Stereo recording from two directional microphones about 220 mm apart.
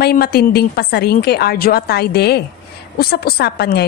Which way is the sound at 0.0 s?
45° left (ahead or behind).